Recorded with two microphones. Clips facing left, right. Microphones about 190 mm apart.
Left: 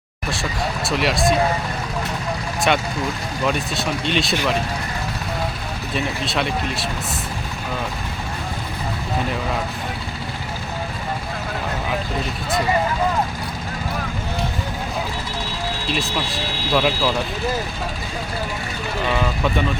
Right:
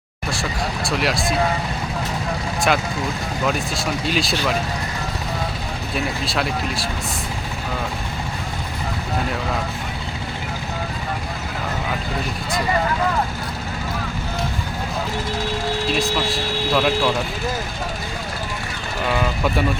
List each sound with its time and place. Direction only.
0.9 s speech: centre (ahead or behind)
2.7 s speech: centre (ahead or behind)
4.0 s speech: centre (ahead or behind)
6.2 s speech: centre (ahead or behind)
16.7 s speech: 5° left (ahead or behind)
19.0 s speech: 5° right (ahead or behind)